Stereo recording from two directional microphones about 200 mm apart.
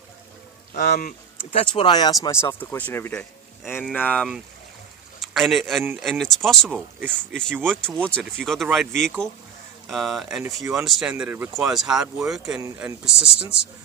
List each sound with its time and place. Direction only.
0.7 s speech: 55° left (ahead or behind)
1.5 s speech: 25° left (ahead or behind); by 13.1 s 5° right (ahead or behind)